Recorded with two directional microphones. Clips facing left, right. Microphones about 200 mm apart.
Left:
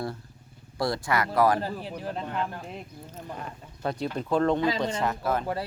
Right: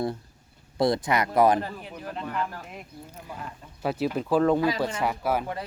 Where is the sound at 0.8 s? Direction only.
20° right (ahead or behind).